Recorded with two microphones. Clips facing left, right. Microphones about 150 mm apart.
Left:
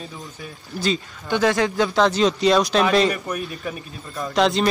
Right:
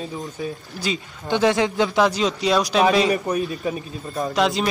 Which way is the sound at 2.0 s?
5° right (ahead or behind).